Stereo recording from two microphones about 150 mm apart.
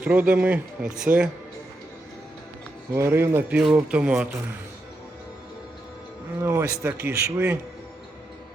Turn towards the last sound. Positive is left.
turn(degrees=-15)  # may be behind; listen again after turning